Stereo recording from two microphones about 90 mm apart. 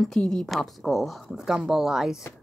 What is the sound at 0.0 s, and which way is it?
Speech, 5° left (ahead or behind).